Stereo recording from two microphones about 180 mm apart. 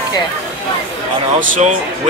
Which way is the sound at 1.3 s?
45° right (ahead or behind).